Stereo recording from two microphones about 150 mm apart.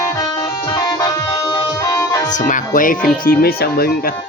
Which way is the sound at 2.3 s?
60° left (ahead or behind).